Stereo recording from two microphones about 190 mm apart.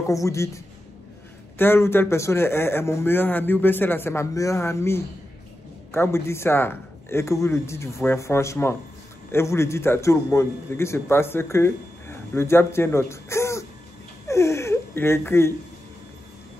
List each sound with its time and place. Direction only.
0.1 s a man's voice: 15° left (ahead or behind)
1.6 s a man's voice: 10° left (ahead or behind)
14.2 s crying: 15° left (ahead or behind)